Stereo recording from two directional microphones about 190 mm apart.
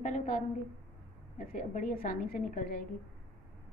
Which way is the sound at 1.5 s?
40° left (ahead or behind).